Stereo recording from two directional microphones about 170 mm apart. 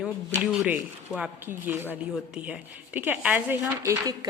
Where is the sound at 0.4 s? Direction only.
5° right (ahead or behind).